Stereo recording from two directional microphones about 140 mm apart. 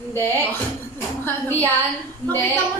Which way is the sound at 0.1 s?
15° left (ahead or behind).